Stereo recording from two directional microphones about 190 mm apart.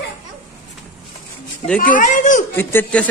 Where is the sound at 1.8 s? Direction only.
45° left (ahead or behind).